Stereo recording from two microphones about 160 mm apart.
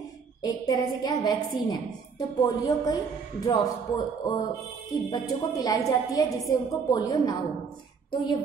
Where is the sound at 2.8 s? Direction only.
25° left (ahead or behind).